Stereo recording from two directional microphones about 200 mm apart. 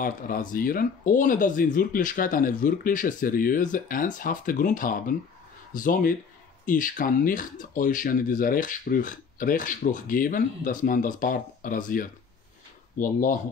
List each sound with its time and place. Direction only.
0.0 s speech: 45° left (ahead or behind)